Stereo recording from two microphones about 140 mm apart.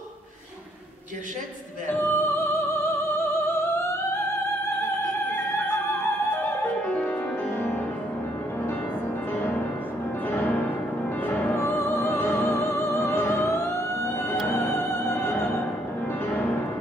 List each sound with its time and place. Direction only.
2.0 s music: 15° left (ahead or behind)
6.3 s music: 15° left (ahead or behind)
10.3 s music: 15° left (ahead or behind)
11.2 s opera: 15° left (ahead or behind)
14.5 s music: 15° left (ahead or behind)